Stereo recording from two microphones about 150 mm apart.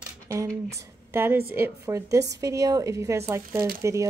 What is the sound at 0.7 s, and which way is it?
A woman's voice, 20° right (ahead or behind).